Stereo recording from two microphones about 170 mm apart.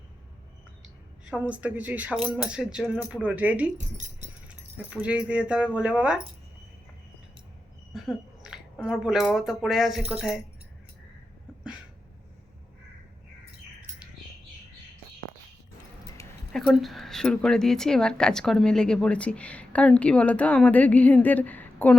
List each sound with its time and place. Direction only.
1.3 s a woman's voice: 5° right (ahead or behind)
3.8 s speech: 45° right (ahead or behind)
4.9 s speech: 5° right (ahead or behind)
7.9 s a sound: centre (ahead or behind)
9.3 s a woman's voice: centre (ahead or behind)
16.5 s a woman's voice: centre (ahead or behind)